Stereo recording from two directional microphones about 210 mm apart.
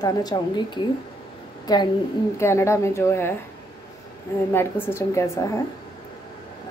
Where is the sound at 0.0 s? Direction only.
20° left (ahead or behind).